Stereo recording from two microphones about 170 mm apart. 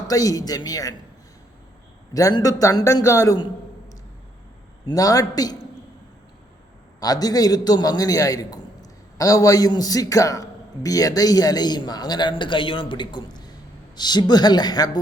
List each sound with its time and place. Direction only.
0.1 s a man's voice: 20° left (ahead or behind)
2.1 s a man's voice: 20° left (ahead or behind)
4.9 s a man's voice: 20° left (ahead or behind)
7.0 s a man's voice: 20° left (ahead or behind)